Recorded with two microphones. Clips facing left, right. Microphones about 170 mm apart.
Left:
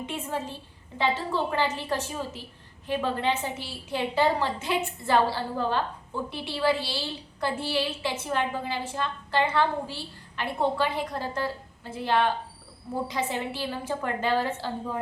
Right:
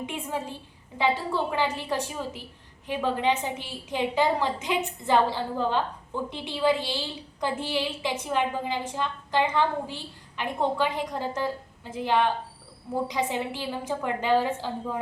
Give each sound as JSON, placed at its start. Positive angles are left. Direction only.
{"t": 0.0, "sound": "a woman's voice", "side_deg": -15}